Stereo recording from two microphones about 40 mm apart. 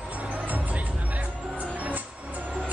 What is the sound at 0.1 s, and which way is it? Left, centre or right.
Music, right.